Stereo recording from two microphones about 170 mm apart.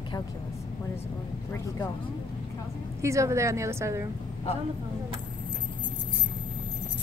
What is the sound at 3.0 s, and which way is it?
A woman's voice, 15° right (ahead or behind).